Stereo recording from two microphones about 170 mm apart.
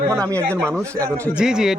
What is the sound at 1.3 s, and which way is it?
Speech, 5° right (ahead or behind).